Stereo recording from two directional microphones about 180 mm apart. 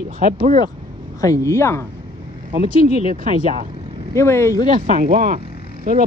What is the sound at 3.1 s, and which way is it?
Speech, 45° right (ahead or behind).